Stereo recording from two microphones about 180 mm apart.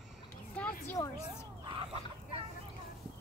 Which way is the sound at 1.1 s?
35° right (ahead or behind).